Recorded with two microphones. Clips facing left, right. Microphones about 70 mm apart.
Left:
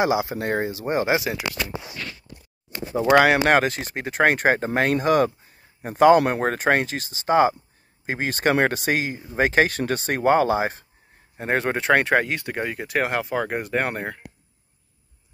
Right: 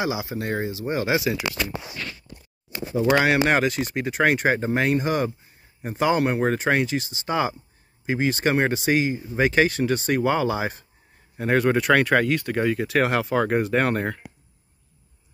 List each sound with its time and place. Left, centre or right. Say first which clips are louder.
0.0 s speech: left 5 dB; left
2.9 s speech: left 3 dB; left
13.0 s speech: right 2 dB; centre